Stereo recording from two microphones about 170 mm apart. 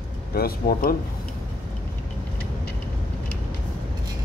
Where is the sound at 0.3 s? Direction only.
60° left (ahead or behind).